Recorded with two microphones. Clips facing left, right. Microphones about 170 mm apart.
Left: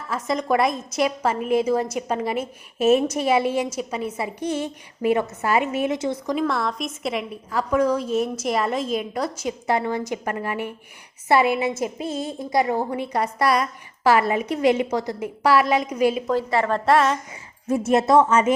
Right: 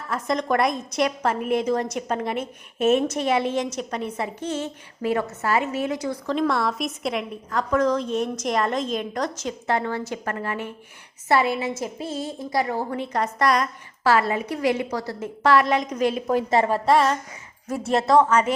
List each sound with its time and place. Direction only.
0.1 s a woman's voice: 5° left (ahead or behind); by 6.3 s 25° left (ahead or behind)
6.3 s a woman's voice: centre (ahead or behind)
16.2 s a woman's voice: 20° right (ahead or behind)
16.7 s a woman's voice: centre (ahead or behind)
17.7 s speech: 20° left (ahead or behind)